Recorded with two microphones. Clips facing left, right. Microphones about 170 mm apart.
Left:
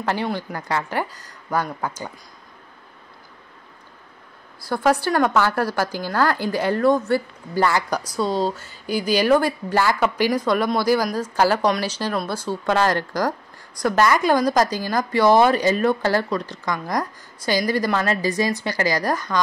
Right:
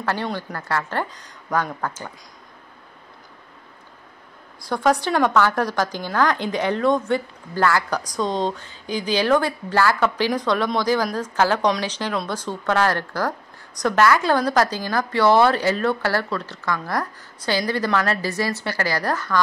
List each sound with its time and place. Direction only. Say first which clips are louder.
0.0 s a woman's voice: left 1 dB; 10° left (ahead or behind)
4.6 s a woman's voice: even; 5° left (ahead or behind)
7.6 s a woman's voice: right 1 dB; 15° left (ahead or behind)